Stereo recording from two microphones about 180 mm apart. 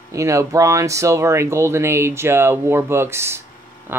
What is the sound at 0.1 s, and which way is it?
Speech, 15° right (ahead or behind).